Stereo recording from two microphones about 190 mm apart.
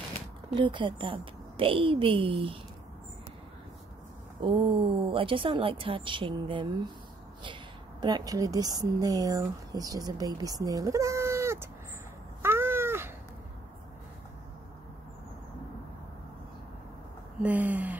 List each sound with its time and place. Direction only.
0.6 s speech: 25° right (ahead or behind)
4.4 s speech: 25° right (ahead or behind)
8.0 s speech: 20° right (ahead or behind)
12.4 s cat: 10° right (ahead or behind)
17.4 s a sound: 10° right (ahead or behind)